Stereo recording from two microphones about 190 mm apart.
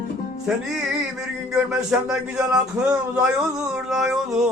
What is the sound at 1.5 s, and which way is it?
Speech, 5° right (ahead or behind).